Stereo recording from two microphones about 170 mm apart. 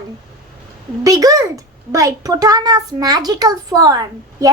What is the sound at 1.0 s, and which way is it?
A child's voice, 20° right (ahead or behind).